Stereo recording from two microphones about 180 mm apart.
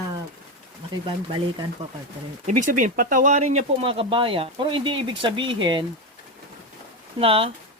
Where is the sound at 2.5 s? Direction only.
45° right (ahead or behind); by 5.8 s 25° right (ahead or behind).